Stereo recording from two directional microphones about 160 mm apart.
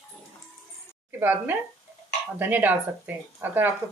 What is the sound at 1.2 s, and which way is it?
Speech, 10° right (ahead or behind).